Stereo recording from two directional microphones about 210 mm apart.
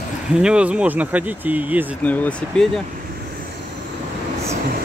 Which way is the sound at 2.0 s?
5° left (ahead or behind).